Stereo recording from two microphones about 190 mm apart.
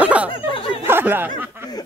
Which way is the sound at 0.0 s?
5° right (ahead or behind).